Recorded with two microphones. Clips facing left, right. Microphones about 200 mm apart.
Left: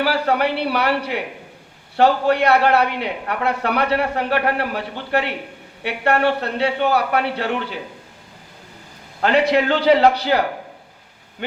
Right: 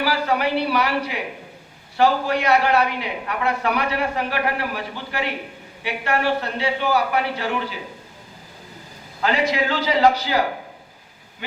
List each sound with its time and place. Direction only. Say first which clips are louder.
0.0 s a man's voice: left 3 dB; 65° left (ahead or behind)
9.2 s a man's voice: left 5 dB; 65° left (ahead or behind)